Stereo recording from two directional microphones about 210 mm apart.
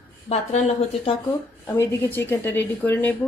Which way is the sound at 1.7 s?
10° left (ahead or behind).